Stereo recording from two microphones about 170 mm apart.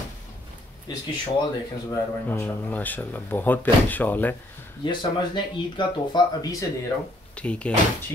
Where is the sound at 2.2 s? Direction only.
10° left (ahead or behind).